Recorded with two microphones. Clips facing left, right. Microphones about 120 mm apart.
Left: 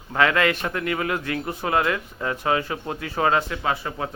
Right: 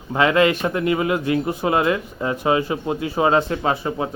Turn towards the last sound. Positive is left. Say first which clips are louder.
# right 4 dB
turn(degrees=-20)  # may be behind; listen again after turning